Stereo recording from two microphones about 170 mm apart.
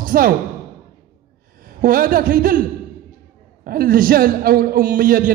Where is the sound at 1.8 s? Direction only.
55° right (ahead or behind).